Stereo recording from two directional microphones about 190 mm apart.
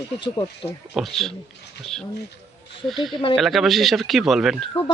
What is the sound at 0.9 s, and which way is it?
Speech, centre (ahead or behind).